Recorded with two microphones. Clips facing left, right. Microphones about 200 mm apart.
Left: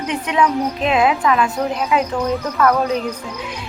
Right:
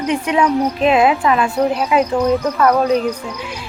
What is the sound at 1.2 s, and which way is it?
Speech, 30° right (ahead or behind).